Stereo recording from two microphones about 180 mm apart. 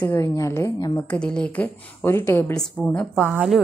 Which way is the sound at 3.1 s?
5° right (ahead or behind).